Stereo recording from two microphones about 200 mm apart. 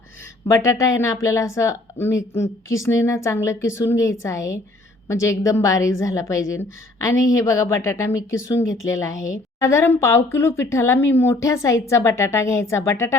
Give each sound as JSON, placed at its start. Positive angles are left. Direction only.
{"t": 0.4, "sound": "speech", "side_deg": 15}
{"t": 8.6, "sound": "speech", "side_deg": 75}
{"t": 8.9, "sound": "speech", "side_deg": 15}